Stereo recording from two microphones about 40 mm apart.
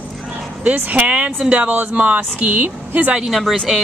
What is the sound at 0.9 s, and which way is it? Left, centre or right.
Speech, right.